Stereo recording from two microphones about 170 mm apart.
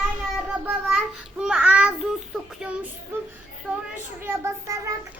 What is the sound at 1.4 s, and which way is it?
Child singing, 5° right (ahead or behind).